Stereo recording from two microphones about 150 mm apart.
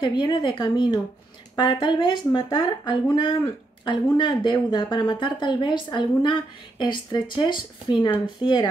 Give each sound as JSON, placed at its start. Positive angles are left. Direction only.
{"t": 0.0, "sound": "speech", "side_deg": 30}